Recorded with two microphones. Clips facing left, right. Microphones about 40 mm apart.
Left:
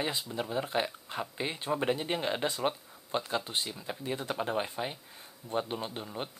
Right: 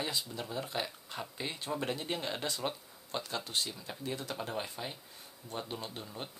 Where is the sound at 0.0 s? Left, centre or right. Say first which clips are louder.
Left 4 dB; left.